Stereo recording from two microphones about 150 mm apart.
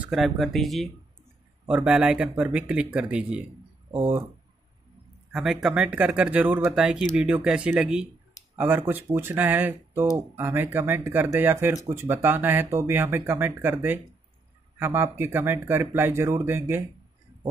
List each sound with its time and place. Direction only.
0.0 s speech: centre (ahead or behind); by 4.3 s 15° right (ahead or behind)
5.3 s speech: centre (ahead or behind)